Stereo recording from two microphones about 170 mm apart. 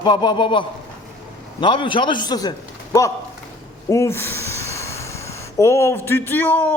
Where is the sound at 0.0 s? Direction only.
25° left (ahead or behind).